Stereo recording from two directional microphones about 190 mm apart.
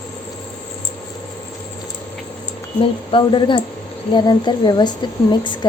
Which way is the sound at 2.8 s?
25° left (ahead or behind).